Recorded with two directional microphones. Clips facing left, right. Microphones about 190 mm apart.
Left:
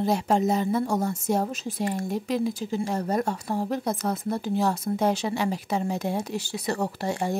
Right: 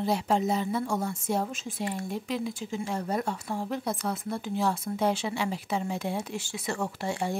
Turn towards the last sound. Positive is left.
turn(degrees=40)  # may be behind; listen again after turning